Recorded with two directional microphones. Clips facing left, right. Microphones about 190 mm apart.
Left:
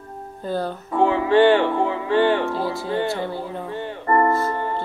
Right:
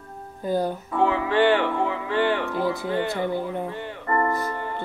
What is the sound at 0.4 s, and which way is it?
Music, 15° right (ahead or behind).